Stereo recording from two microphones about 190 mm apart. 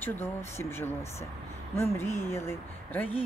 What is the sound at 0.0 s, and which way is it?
Speech, 10° left (ahead or behind).